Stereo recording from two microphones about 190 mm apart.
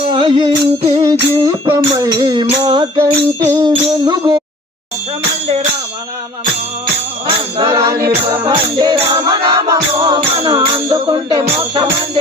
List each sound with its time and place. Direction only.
0.1 s music: 25° right (ahead or behind)
7.3 s music: 25° right (ahead or behind)